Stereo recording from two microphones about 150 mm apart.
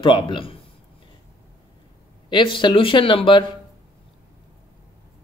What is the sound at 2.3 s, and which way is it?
Speech, 30° left (ahead or behind).